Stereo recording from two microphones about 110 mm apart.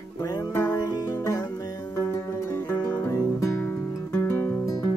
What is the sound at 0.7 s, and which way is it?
Music, 35° left (ahead or behind).